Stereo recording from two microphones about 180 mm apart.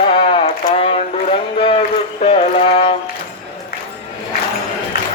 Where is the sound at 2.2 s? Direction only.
30° left (ahead or behind).